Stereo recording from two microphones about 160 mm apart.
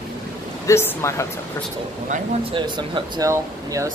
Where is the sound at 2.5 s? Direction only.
30° right (ahead or behind).